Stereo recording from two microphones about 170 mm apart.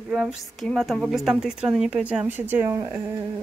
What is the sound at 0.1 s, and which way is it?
A woman's voice, centre (ahead or behind).